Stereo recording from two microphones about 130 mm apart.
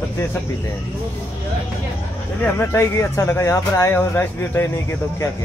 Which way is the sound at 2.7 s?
20° left (ahead or behind).